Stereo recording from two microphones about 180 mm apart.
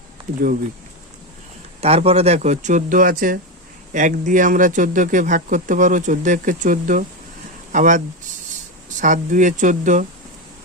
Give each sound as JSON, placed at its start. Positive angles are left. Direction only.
{"t": 0.3, "sound": "speech", "side_deg": -45}
{"t": 1.8, "sound": "speech", "side_deg": -35}